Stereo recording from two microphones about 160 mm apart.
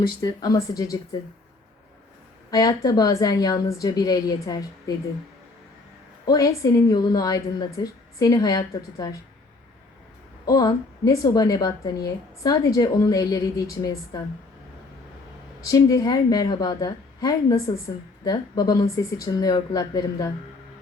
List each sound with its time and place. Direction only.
0.2 s a woman's voice: 25° left (ahead or behind)
2.5 s a woman's voice: 25° left (ahead or behind)
6.2 s a woman's voice: 20° left (ahead or behind)
10.4 s a woman's voice: 20° left (ahead or behind)
15.6 s a woman's voice: 20° left (ahead or behind)